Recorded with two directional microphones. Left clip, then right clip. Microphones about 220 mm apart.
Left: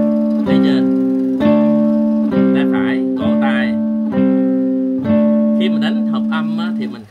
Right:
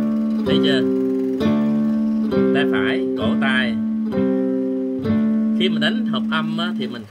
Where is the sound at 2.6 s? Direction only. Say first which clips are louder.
Left 2 dB; centre (ahead or behind).